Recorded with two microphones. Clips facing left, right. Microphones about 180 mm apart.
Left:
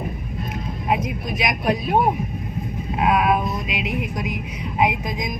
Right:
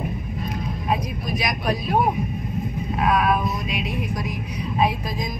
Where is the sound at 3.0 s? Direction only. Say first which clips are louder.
Left 2 dB; 25° left (ahead or behind).